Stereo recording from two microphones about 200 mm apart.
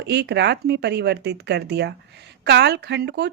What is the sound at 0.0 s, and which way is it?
Speech, 55° right (ahead or behind).